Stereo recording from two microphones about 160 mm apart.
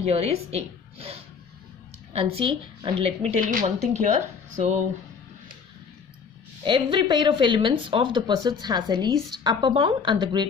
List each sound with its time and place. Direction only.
0.0 s a woman's voice: 40° right (ahead or behind)
2.1 s a woman's voice: 35° right (ahead or behind)
3.3 s speech: 55° right (ahead or behind)
6.6 s speech: 30° right (ahead or behind)